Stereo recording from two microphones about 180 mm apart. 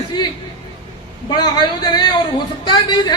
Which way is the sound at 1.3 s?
25° left (ahead or behind).